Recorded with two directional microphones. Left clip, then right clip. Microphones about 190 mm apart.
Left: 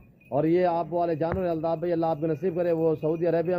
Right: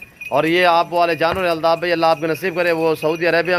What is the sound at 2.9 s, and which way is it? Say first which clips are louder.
Speech: right 8 dB; 15° right (ahead or behind).